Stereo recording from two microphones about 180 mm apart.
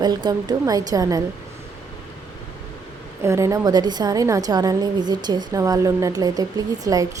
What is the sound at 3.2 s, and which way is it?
A woman's voice, 15° right (ahead or behind).